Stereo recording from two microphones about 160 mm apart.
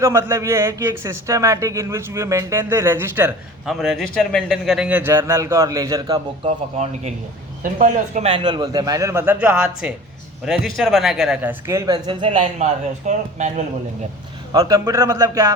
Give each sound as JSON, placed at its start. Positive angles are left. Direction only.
{"t": 0.0, "sound": "speech", "side_deg": -15}
{"t": 3.7, "sound": "speech", "side_deg": 0}
{"t": 6.4, "sound": "a man's voice", "side_deg": -45}
{"t": 8.3, "sound": "speech", "side_deg": -30}
{"t": 11.6, "sound": "speech", "side_deg": -20}
{"t": 14.5, "sound": "speech", "side_deg": -20}